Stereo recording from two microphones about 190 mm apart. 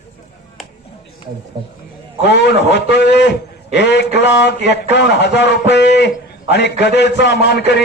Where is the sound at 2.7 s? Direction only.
65° left (ahead or behind).